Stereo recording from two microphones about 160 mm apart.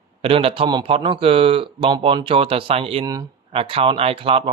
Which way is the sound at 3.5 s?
35° right (ahead or behind).